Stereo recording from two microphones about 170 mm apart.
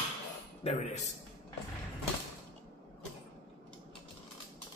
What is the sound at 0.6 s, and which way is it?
Speech, 40° left (ahead or behind).